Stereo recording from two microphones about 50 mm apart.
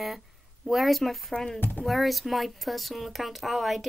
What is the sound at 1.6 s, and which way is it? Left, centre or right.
Speech, left.